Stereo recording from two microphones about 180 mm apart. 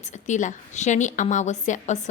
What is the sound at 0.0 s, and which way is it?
A woman's voice, 40° left (ahead or behind).